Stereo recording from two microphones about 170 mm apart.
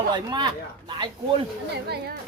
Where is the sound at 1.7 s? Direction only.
70° right (ahead or behind).